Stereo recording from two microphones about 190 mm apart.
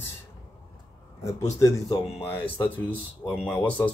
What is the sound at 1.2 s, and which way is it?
Speech, 15° left (ahead or behind).